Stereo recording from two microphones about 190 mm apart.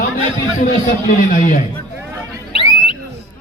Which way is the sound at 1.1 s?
45° left (ahead or behind).